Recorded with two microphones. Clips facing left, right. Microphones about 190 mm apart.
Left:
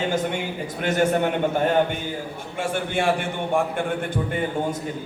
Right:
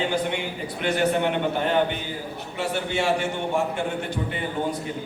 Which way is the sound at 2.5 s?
50° left (ahead or behind).